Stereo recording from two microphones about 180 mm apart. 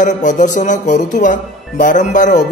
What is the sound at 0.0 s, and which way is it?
Speech, 45° left (ahead or behind).